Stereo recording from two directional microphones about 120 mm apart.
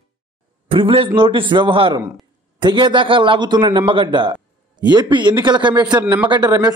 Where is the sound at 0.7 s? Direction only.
45° right (ahead or behind).